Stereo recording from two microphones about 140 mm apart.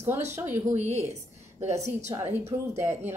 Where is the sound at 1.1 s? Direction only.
55° right (ahead or behind).